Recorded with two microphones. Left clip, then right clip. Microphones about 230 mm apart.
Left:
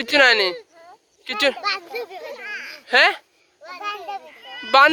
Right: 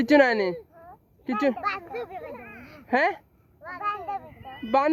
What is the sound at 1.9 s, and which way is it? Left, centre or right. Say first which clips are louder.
Speech: left 4 dB; left.